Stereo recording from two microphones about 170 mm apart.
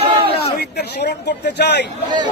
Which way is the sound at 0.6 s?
75° left (ahead or behind).